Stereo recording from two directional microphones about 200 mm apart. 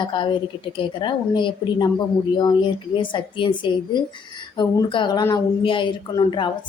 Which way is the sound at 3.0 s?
25° left (ahead or behind).